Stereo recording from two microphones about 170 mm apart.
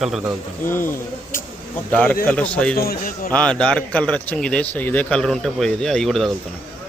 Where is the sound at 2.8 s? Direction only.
60° left (ahead or behind).